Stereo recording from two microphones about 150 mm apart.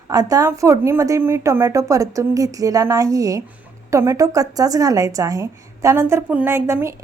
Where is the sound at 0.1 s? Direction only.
25° right (ahead or behind).